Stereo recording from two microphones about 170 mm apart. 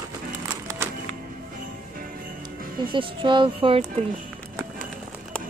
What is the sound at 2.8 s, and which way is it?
Speech, 30° right (ahead or behind).